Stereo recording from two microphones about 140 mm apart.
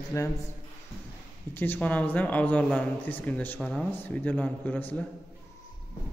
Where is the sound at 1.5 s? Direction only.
15° left (ahead or behind).